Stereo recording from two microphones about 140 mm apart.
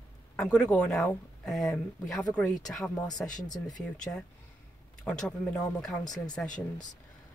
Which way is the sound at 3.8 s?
5° left (ahead or behind).